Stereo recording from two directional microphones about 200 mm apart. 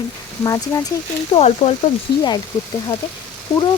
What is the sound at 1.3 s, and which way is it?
Speech, 30° left (ahead or behind).